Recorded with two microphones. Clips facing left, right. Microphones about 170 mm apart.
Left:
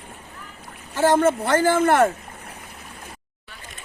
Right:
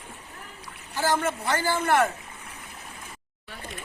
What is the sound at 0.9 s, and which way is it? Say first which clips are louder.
Speech: left 8 dB; 65° left (ahead or behind).